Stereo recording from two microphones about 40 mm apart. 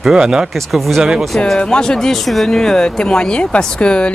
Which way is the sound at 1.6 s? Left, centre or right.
Centre.